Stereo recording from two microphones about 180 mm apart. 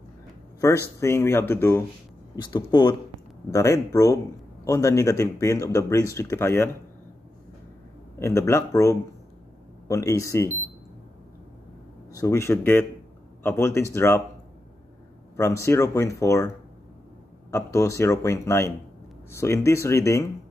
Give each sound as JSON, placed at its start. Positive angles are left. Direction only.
{"t": 0.6, "sound": "speech", "side_deg": 15}
{"t": 2.4, "sound": "speech", "side_deg": 25}
{"t": 8.2, "sound": "speech", "side_deg": 15}
{"t": 12.1, "sound": "speech", "side_deg": 15}
{"t": 15.3, "sound": "speech", "side_deg": 15}